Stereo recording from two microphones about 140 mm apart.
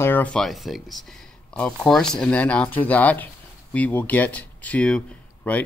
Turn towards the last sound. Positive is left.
turn(degrees=10)  # may be behind; listen again after turning